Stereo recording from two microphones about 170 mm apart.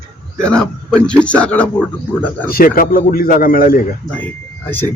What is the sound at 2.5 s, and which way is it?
A man's voice, 60° left (ahead or behind).